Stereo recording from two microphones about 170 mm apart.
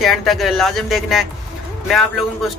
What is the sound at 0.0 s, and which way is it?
Speech, centre (ahead or behind).